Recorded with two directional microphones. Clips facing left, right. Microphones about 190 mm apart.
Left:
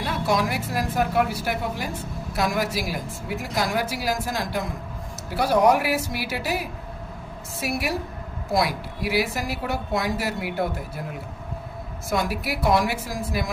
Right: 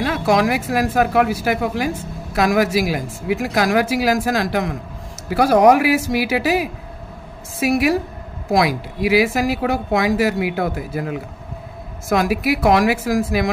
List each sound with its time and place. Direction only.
0.0 s speech: 90° right